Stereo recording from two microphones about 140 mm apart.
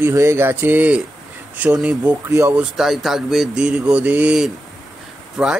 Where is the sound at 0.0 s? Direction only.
20° right (ahead or behind).